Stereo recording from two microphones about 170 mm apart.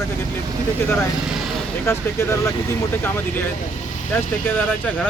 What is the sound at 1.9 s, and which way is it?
Speech, 15° left (ahead or behind).